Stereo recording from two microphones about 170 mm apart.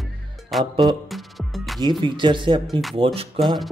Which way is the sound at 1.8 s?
25° right (ahead or behind).